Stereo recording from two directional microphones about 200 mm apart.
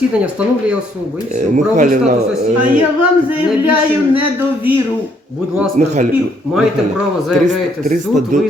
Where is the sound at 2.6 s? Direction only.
5° right (ahead or behind).